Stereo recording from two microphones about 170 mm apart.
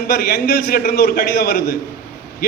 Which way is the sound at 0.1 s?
65° left (ahead or behind).